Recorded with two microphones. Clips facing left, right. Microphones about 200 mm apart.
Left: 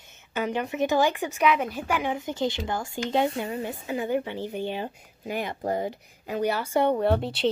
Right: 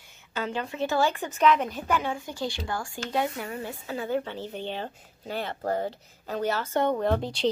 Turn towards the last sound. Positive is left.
turn(degrees=5)  # may be behind; listen again after turning